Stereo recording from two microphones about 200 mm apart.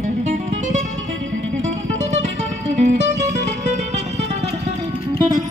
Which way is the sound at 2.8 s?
35° right (ahead or behind).